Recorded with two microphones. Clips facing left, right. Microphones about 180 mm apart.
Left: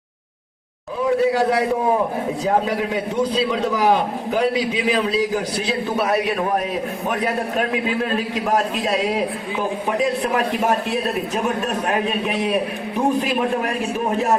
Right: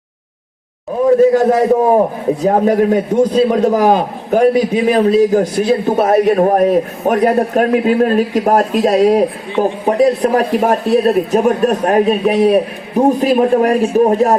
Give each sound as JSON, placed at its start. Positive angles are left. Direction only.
{"t": 1.0, "sound": "a man's voice", "side_deg": -45}